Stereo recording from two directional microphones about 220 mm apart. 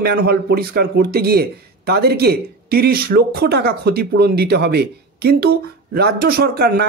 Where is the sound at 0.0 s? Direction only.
45° right (ahead or behind).